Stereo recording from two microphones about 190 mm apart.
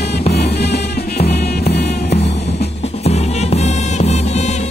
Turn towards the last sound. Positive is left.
turn(degrees=35)  # may be behind; listen again after turning